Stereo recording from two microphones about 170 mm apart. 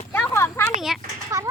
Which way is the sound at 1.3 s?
20° right (ahead or behind).